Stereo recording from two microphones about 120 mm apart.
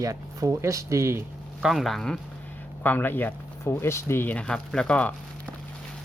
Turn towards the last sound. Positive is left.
turn(degrees=10)  # may be behind; listen again after turning